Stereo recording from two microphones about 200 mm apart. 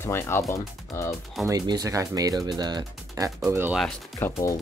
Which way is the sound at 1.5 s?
15° right (ahead or behind).